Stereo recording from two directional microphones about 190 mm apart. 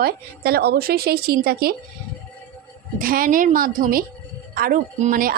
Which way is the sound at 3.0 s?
50° right (ahead or behind).